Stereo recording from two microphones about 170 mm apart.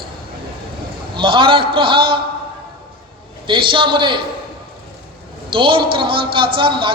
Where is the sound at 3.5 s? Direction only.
30° right (ahead or behind).